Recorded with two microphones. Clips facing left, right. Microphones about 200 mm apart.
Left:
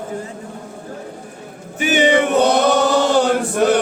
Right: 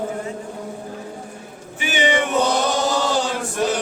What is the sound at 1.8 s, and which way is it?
Choir, 50° left (ahead or behind).